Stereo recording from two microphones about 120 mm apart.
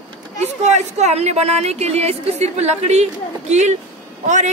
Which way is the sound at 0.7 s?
70° right (ahead or behind).